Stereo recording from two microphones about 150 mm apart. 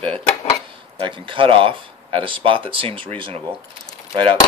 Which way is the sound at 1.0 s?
35° right (ahead or behind).